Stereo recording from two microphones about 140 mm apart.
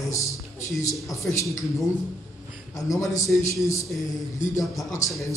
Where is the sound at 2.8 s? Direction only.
25° left (ahead or behind).